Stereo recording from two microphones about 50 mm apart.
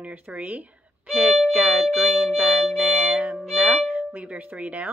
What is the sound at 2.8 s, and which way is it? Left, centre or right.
Music, centre.